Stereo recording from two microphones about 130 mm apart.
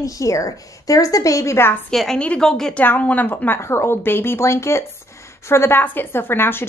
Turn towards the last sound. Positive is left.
turn(degrees=15)  # may be behind; listen again after turning